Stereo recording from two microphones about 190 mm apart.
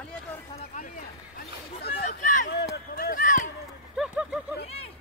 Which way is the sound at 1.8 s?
55° left (ahead or behind).